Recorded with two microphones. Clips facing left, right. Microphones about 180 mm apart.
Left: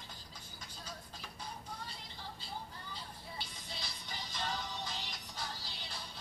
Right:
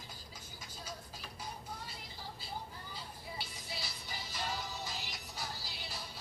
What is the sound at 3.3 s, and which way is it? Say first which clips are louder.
Music: right 2 dB; 5° right (ahead or behind).